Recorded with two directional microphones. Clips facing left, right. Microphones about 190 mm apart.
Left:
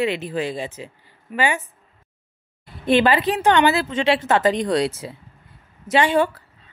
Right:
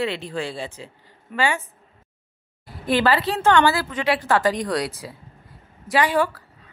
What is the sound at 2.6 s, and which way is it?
Speech, 20° left (ahead or behind).